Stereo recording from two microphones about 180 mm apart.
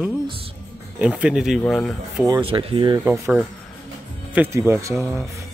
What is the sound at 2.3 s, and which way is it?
Speech, 30° right (ahead or behind).